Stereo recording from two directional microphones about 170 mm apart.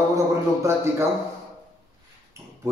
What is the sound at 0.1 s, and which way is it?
Speech, 20° right (ahead or behind).